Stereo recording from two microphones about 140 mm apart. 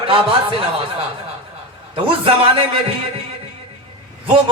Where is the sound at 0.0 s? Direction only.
40° right (ahead or behind).